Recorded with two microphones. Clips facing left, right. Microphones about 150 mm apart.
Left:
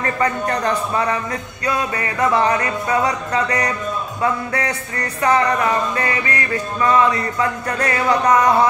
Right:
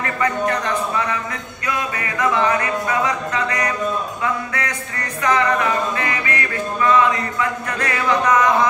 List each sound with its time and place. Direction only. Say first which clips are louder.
0.0 s speech: even; 35° left (ahead or behind)